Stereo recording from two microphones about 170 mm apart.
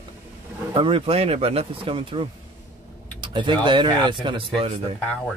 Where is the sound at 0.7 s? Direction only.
30° right (ahead or behind).